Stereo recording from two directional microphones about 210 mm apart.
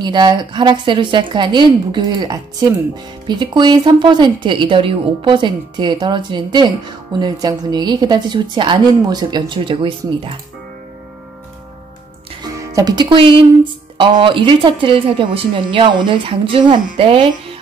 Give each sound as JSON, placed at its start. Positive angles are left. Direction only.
{"t": 0.0, "sound": "speech", "side_deg": -20}
{"t": 12.5, "sound": "speech", "side_deg": -15}